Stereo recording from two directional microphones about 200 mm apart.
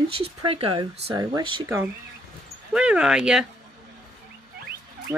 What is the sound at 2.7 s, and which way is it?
Speech, 5° right (ahead or behind).